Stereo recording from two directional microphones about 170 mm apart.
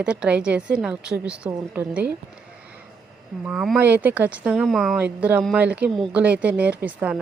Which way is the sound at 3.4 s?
5° right (ahead or behind).